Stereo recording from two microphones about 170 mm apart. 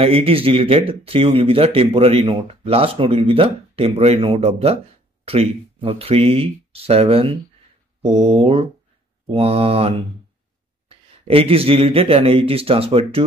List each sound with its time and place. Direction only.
0.0 s speech: 35° right (ahead or behind)